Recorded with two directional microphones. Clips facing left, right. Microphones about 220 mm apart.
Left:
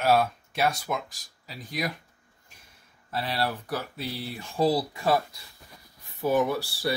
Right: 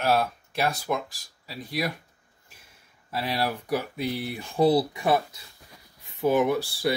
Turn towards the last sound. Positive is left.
turn(degrees=-20)  # may be behind; listen again after turning